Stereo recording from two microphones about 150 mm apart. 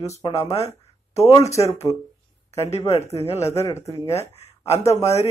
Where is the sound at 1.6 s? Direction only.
20° left (ahead or behind).